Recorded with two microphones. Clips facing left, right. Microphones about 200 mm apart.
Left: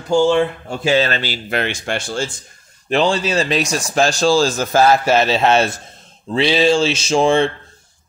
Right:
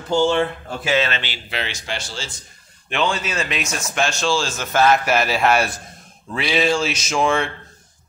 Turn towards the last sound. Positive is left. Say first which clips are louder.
# left 6 dB
turn(degrees=30)  # may be behind; listen again after turning